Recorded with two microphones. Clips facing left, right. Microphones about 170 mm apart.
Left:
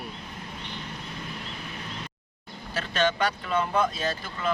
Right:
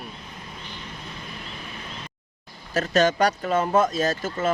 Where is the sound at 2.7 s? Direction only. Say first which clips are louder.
Right 6 dB; 45° right (ahead or behind).